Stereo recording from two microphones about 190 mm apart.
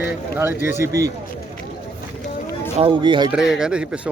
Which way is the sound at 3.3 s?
5° right (ahead or behind).